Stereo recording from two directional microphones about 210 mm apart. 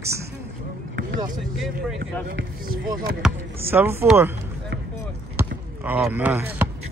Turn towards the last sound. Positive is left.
turn(degrees=-10)  # may be behind; listen again after turning